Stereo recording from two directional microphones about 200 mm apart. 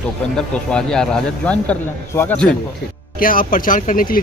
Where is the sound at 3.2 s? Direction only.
45° left (ahead or behind).